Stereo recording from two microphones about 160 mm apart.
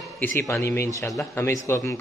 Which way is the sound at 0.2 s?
15° left (ahead or behind).